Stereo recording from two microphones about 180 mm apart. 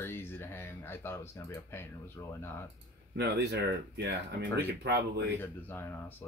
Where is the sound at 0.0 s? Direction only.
10° left (ahead or behind).